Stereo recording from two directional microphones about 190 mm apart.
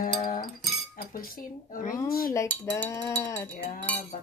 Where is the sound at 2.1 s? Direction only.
50° left (ahead or behind).